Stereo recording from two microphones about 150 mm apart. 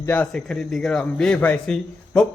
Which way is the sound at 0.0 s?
10° left (ahead or behind).